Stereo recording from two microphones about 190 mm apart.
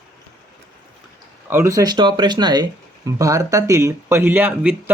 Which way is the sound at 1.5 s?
15° right (ahead or behind).